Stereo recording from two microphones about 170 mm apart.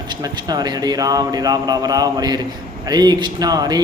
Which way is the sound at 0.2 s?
25° right (ahead or behind).